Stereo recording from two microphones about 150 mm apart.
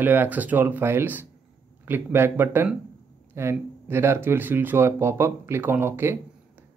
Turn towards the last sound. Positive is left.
turn(degrees=-15)  # may be behind; listen again after turning